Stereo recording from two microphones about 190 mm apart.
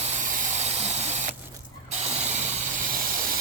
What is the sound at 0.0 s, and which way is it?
Spray, 40° right (ahead or behind).